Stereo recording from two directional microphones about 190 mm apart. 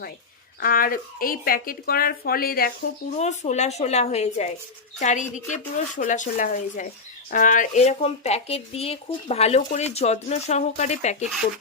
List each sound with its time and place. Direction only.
0.6 s speech: 50° left (ahead or behind)
3.2 s a woman's voice: 35° left (ahead or behind)